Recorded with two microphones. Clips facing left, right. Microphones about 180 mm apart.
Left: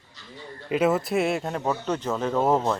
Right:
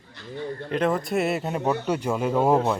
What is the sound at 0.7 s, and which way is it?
Speech, 5° left (ahead or behind).